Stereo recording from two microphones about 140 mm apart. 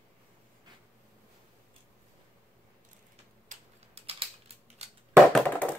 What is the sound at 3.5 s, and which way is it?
Typing, 65° right (ahead or behind).